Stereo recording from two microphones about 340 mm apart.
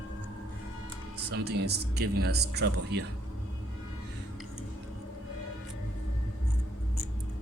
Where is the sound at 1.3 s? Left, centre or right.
Right.